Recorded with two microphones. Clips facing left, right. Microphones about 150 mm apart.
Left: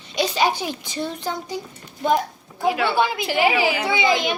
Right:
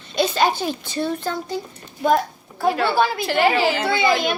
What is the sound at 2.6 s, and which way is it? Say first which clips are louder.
A woman's voice: right 1 dB; 10° left (ahead or behind).